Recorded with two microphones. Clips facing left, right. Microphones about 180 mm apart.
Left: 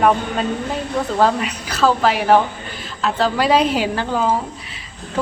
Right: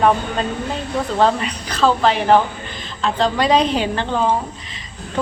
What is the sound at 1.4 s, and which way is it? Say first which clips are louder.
A woman's voice: even; 5° left (ahead or behind).